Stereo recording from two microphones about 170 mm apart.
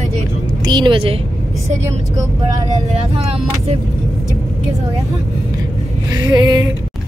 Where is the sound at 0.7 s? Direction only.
30° right (ahead or behind).